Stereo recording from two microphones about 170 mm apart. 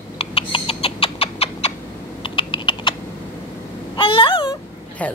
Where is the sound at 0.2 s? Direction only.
30° left (ahead or behind).